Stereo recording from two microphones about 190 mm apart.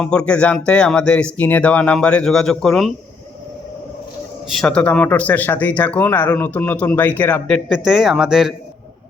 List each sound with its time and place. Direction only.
0.0 s speech: 5° left (ahead or behind)
4.4 s speech: centre (ahead or behind)